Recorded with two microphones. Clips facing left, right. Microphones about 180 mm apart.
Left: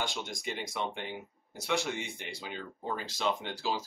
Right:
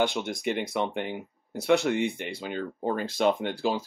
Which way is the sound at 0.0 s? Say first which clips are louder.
Right 10 dB; 60° right (ahead or behind).